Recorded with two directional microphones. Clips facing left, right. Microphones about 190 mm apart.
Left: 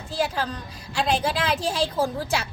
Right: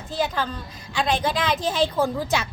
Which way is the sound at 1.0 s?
5° left (ahead or behind).